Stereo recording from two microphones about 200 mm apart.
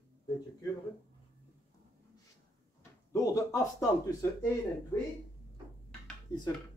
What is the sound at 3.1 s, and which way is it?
Speech, 15° left (ahead or behind).